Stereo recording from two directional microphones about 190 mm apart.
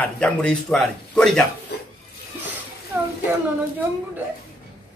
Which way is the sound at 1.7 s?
60° left (ahead or behind).